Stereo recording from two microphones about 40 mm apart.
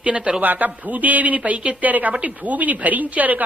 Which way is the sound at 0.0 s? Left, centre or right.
Right.